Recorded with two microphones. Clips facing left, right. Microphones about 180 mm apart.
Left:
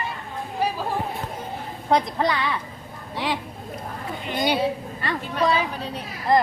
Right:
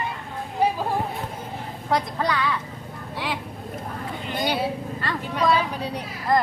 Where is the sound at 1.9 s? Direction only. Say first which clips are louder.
Left 3 dB; 20° left (ahead or behind).